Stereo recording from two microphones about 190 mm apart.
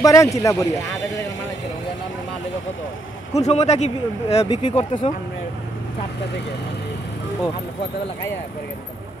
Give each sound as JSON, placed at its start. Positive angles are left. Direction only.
{"t": 0.0, "sound": "speech", "side_deg": 15}
{"t": 3.3, "sound": "speech", "side_deg": 35}